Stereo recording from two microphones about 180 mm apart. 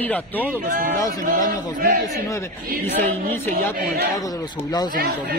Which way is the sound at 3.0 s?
10° left (ahead or behind).